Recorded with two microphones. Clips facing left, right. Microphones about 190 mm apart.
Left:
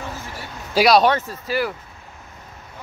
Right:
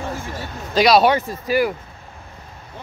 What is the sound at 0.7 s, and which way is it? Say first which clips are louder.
Speech: right 1 dB; centre (ahead or behind).